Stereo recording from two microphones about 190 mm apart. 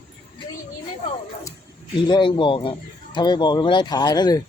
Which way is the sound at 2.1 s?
25° left (ahead or behind).